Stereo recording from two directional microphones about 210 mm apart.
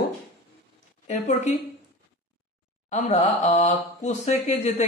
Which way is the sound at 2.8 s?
35° left (ahead or behind).